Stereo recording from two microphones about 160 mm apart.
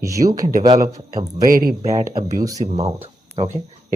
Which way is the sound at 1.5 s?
65° right (ahead or behind).